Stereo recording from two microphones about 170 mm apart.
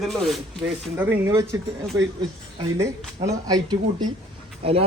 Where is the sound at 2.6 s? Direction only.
20° right (ahead or behind).